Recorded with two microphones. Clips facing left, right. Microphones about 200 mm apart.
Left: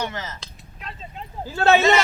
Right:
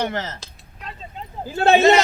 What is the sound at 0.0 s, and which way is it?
Speech, 60° right (ahead or behind).